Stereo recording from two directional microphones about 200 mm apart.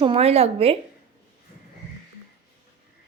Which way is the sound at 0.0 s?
30° right (ahead or behind).